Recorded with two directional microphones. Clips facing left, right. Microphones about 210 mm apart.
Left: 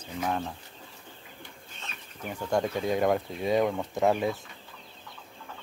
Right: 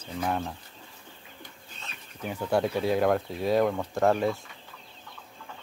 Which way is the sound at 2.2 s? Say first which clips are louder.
Right 2 dB; 5° right (ahead or behind).